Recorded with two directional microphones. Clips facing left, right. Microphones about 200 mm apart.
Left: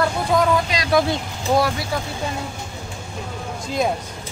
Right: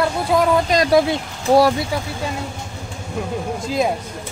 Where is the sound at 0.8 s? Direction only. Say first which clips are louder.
Right 3 dB; 30° right (ahead or behind).